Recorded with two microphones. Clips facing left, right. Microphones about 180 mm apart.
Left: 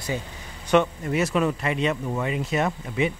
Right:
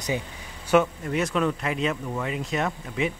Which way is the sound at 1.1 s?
5° left (ahead or behind).